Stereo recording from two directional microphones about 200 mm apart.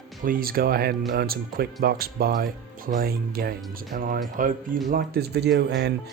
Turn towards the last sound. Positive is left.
turn(degrees=-55)  # may be behind; listen again after turning